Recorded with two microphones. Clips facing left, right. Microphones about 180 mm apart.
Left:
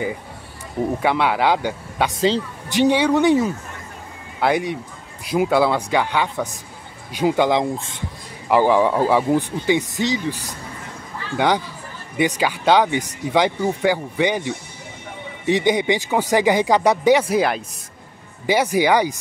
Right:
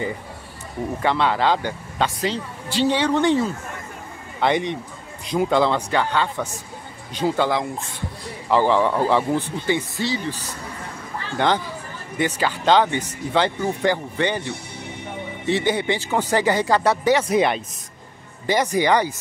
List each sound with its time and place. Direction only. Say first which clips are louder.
0.9 s speech: even; 10° left (ahead or behind)
2.1 s speech: left 6 dB; 25° left (ahead or behind)
2.7 s speech: left 3 dB; 15° left (ahead or behind)